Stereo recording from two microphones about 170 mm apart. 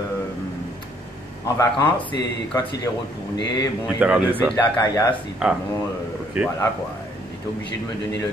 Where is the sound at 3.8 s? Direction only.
5° right (ahead or behind).